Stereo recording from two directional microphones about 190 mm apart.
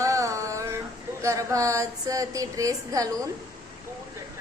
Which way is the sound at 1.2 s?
15° right (ahead or behind).